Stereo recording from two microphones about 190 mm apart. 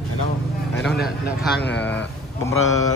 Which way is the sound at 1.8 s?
10° left (ahead or behind).